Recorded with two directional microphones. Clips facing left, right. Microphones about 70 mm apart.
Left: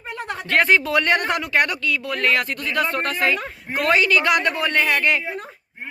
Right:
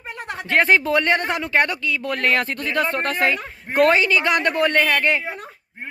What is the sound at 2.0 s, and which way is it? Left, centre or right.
Speech, right.